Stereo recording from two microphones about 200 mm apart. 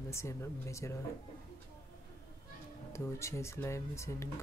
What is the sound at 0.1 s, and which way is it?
Speech, 15° left (ahead or behind).